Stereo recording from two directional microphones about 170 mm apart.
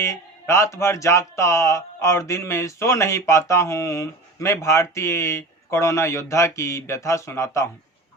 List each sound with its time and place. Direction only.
0.0 s speech: 15° left (ahead or behind)